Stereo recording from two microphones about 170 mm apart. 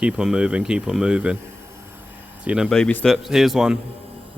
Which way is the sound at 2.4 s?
5° right (ahead or behind).